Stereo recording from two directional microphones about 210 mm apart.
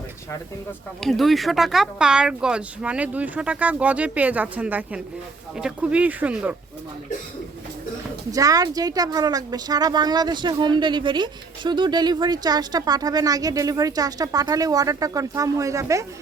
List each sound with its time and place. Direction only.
1.0 s speech: centre (ahead or behind)
8.3 s speech: 15° right (ahead or behind)